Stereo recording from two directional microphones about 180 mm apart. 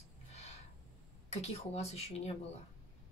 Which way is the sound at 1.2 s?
35° left (ahead or behind).